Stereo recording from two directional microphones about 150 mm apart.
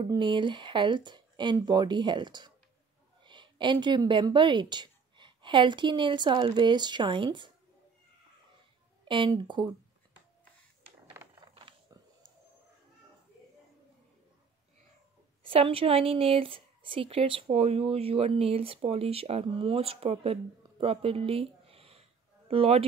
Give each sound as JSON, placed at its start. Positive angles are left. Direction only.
{"t": 0.1, "sound": "a woman's voice", "side_deg": -30}
{"t": 9.0, "sound": "speech", "side_deg": -35}
{"t": 11.4, "sound": "a sound", "side_deg": -30}
{"t": 15.4, "sound": "speech", "side_deg": -40}